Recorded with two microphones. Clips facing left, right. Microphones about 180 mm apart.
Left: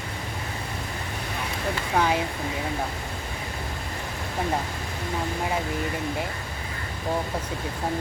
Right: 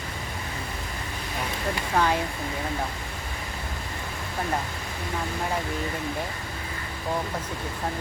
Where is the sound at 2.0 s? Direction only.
15° left (ahead or behind).